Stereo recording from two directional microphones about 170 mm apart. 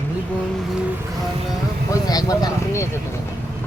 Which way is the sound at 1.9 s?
20° left (ahead or behind).